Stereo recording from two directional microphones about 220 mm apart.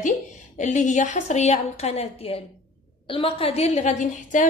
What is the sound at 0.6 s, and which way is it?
A woman's voice, 35° left (ahead or behind).